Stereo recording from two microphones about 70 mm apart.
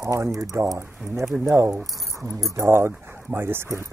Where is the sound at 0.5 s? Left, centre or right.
Right.